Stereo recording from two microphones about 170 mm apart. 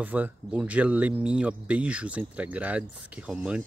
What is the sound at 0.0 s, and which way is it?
Speech, 10° right (ahead or behind).